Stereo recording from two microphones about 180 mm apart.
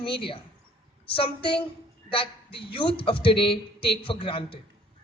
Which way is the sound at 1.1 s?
30° left (ahead or behind).